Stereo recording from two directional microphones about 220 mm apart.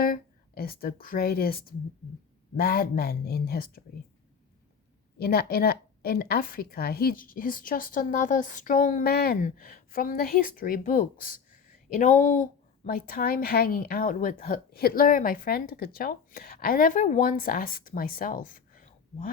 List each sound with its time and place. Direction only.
0.0 s speech: 40° left (ahead or behind)
5.1 s a woman's voice: 45° left (ahead or behind)